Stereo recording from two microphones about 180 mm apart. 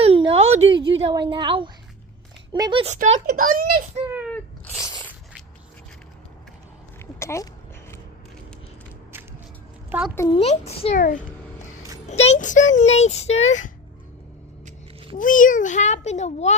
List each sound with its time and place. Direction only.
0.0 s a sound: 30° right (ahead or behind)
1.1 s a woman's voice: 25° right (ahead or behind)
2.8 s speech: 40° right (ahead or behind)
4.4 s sneeze: 10° left (ahead or behind)
7.2 s speech: 15° left (ahead or behind)
9.9 s speech: 10° right (ahead or behind)
10.2 s a child's voice: 35° left (ahead or behind)
10.9 s a child's voice: 50° left (ahead or behind)
12.0 s a child's voice: 35° left (ahead or behind)
15.2 s a child's voice: 45° left (ahead or behind)